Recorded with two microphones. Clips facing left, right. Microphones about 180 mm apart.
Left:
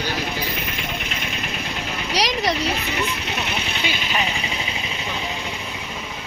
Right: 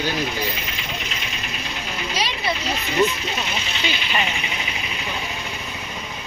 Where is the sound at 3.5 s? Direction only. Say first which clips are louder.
Left 1 dB; 60° left (ahead or behind).